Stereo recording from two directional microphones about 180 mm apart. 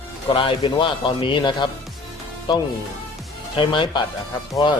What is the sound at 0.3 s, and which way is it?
A man's voice, 30° left (ahead or behind).